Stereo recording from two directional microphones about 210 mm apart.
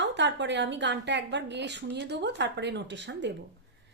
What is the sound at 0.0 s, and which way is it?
A woman's voice, 60° right (ahead or behind).